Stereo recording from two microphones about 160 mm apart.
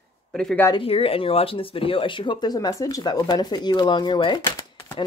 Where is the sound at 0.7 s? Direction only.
35° left (ahead or behind).